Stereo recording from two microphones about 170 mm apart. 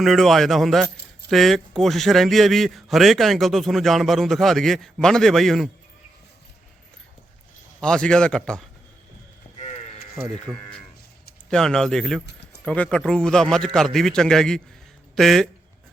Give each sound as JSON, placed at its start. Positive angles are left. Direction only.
{"t": 0.0, "sound": "a man's voice", "side_deg": 0}
{"t": 7.8, "sound": "a man's voice", "side_deg": 5}
{"t": 9.6, "sound": "sheep", "side_deg": 40}
{"t": 10.2, "sound": "a man's voice", "side_deg": -5}
{"t": 11.4, "sound": "a man's voice", "side_deg": 5}
{"t": 12.2, "sound": "a sound", "side_deg": 90}
{"t": 12.6, "sound": "a man's voice", "side_deg": 5}